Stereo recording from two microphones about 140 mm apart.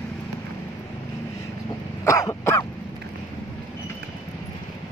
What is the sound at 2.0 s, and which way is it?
Throat clearing, 25° left (ahead or behind).